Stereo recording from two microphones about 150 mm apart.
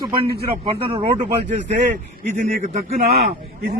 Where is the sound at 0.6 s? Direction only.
35° right (ahead or behind).